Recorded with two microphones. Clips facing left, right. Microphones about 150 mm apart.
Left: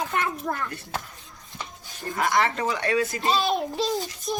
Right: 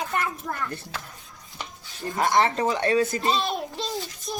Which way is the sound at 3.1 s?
40° right (ahead or behind).